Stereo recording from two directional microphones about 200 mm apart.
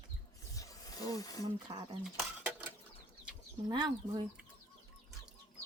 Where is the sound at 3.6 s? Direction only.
20° right (ahead or behind).